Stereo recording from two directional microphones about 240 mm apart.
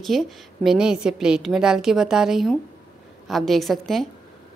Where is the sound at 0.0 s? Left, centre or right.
Centre.